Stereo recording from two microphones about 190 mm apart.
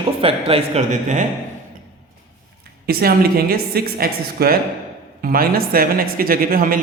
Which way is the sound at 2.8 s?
55° right (ahead or behind).